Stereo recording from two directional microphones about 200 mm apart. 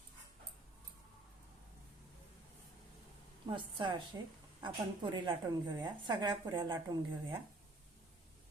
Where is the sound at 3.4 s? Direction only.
25° right (ahead or behind).